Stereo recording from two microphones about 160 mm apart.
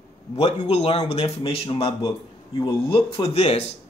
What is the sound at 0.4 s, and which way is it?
Speech, 40° left (ahead or behind).